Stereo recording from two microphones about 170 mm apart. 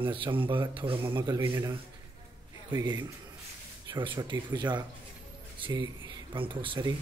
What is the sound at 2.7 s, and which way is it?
A man's voice, 25° right (ahead or behind).